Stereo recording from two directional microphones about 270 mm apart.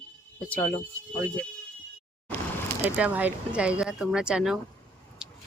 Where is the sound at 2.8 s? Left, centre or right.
Centre.